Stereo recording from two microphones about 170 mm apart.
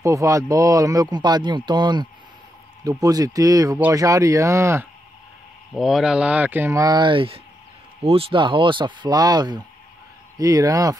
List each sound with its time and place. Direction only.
0.0 s speech: 20° right (ahead or behind)
5.7 s speech: centre (ahead or behind); by 11.0 s 20° right (ahead or behind)